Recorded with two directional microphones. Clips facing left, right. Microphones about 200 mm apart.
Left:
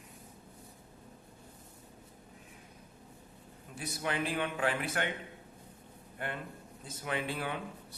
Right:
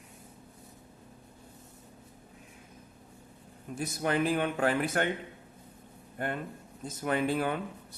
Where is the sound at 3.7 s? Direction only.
45° right (ahead or behind).